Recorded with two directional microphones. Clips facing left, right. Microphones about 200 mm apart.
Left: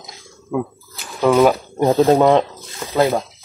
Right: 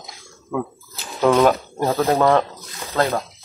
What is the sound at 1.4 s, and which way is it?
Speech, 15° left (ahead or behind).